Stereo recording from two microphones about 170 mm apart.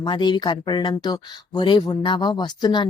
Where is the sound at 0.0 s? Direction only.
25° left (ahead or behind).